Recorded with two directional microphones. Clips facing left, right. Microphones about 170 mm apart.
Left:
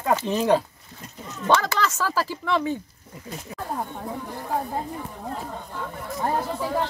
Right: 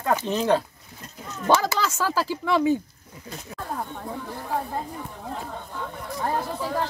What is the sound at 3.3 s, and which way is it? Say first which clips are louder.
A woman's voice: left 2 dB; 10° left (ahead or behind).